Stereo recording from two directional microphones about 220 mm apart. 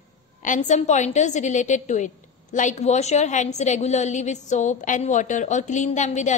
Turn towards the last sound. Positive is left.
turn(degrees=35)  # may be behind; listen again after turning